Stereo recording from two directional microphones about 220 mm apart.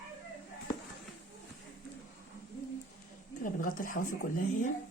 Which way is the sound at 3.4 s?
40° left (ahead or behind).